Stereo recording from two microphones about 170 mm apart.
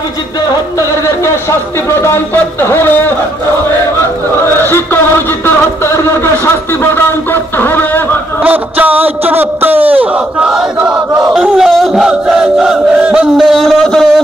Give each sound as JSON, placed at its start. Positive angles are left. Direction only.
{"t": 0.7, "sound": "speech", "side_deg": 15}
{"t": 4.6, "sound": "music", "side_deg": 10}
{"t": 5.4, "sound": "speech", "side_deg": 15}
{"t": 8.4, "sound": "speech", "side_deg": -10}
{"t": 9.8, "sound": "battle cry", "side_deg": -10}